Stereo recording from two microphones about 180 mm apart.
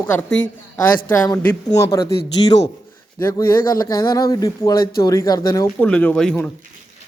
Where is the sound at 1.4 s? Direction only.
20° left (ahead or behind).